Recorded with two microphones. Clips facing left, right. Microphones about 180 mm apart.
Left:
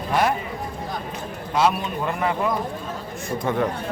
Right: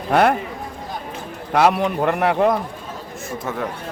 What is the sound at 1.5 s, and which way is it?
A man's voice, 65° right (ahead or behind).